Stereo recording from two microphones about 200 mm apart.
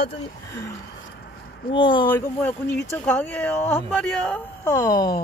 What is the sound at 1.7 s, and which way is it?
Speech, 25° left (ahead or behind).